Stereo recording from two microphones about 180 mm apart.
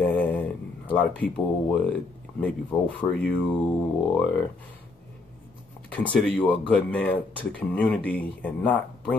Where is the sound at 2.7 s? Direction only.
10° left (ahead or behind).